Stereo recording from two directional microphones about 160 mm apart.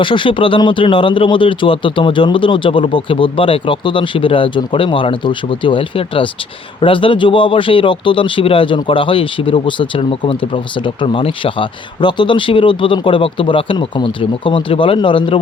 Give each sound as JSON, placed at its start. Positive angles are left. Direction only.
{"t": 0.0, "sound": "speech", "side_deg": 30}